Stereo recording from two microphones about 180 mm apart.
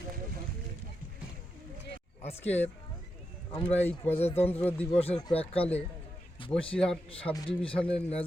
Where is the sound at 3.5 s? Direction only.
30° left (ahead or behind).